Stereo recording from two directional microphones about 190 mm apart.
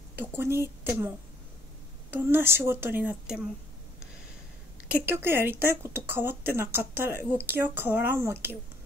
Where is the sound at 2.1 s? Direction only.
10° right (ahead or behind).